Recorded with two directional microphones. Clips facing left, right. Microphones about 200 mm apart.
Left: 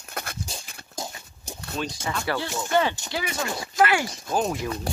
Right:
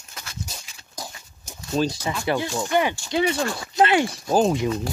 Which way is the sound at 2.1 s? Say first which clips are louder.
Right 4 dB; 15° right (ahead or behind).